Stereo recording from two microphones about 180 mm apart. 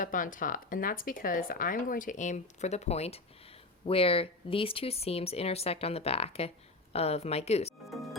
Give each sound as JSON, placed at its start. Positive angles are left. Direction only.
{"t": 0.0, "sound": "speech", "side_deg": 45}